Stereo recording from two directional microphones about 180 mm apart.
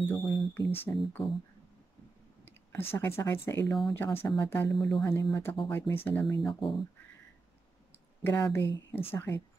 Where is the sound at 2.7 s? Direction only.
15° left (ahead or behind).